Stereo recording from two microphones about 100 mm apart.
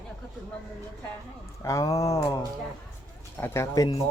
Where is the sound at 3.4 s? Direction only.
25° left (ahead or behind).